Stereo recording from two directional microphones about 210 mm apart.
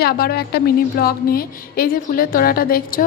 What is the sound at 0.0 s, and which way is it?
A woman's voice, 45° left (ahead or behind).